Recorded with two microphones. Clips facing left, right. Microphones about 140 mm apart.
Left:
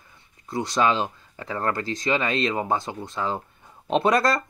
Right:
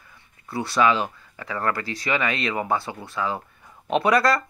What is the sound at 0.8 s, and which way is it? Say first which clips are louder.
Speech: right 3 dB; 30° left (ahead or behind).